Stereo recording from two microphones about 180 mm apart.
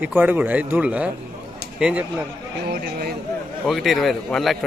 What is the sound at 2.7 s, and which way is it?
Speech, 60° right (ahead or behind).